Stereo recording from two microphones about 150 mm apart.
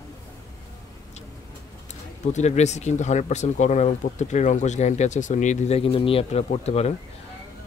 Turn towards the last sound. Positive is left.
turn(degrees=45)  # may be behind; listen again after turning